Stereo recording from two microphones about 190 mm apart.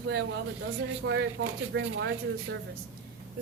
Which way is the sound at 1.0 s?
70° right (ahead or behind).